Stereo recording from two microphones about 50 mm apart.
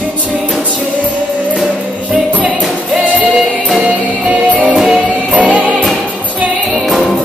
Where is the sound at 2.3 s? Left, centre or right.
Right.